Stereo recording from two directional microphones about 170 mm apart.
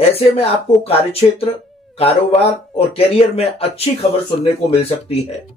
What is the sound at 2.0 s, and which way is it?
Speech, 35° left (ahead or behind).